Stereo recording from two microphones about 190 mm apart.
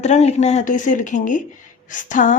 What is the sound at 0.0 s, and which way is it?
A woman's voice, 35° left (ahead or behind).